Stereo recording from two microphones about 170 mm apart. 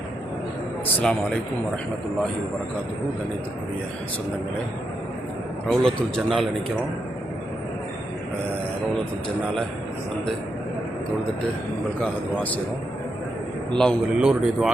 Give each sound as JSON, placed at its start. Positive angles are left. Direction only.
{"t": 0.9, "sound": "speech", "side_deg": 5}
{"t": 5.6, "sound": "speech", "side_deg": 5}
{"t": 11.9, "sound": "speech", "side_deg": 10}
{"t": 13.7, "sound": "speech", "side_deg": 0}